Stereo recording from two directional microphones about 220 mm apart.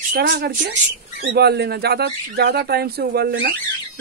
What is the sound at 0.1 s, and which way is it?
Speech, 45° right (ahead or behind).